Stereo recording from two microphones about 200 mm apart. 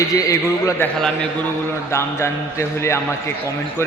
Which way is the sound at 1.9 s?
15° left (ahead or behind).